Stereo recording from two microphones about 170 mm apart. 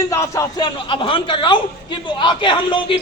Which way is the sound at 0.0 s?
15° left (ahead or behind).